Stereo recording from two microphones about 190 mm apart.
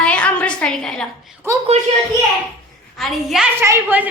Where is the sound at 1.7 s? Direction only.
35° right (ahead or behind).